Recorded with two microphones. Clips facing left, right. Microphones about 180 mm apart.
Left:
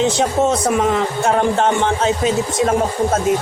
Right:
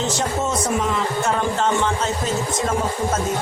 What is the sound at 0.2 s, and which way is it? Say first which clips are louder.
Speech: left 6 dB; 65° left (ahead or behind).